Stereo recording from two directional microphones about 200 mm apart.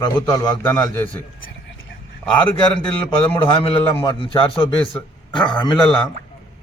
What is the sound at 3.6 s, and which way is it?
Speech, 25° left (ahead or behind).